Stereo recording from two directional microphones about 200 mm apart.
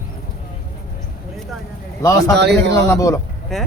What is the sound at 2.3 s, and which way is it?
Speech, 55° right (ahead or behind).